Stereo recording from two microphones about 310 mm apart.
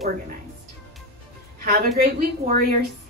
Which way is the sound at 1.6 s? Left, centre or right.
Right.